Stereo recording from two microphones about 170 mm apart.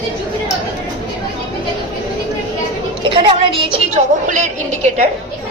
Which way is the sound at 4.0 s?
50° right (ahead or behind).